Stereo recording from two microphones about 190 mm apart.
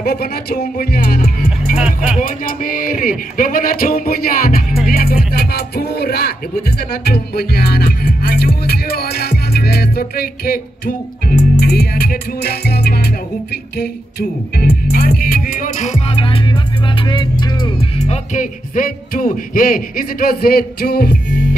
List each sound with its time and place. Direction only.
0.0 s music: 55° left (ahead or behind)
1.8 s speech: 5° right (ahead or behind)
2.1 s music: 45° left (ahead or behind); by 17.8 s 25° left (ahead or behind)
17.9 s music: 35° left (ahead or behind); by 21.5 s 55° left (ahead or behind)